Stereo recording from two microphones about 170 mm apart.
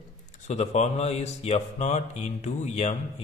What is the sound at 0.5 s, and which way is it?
Speech, 40° left (ahead or behind).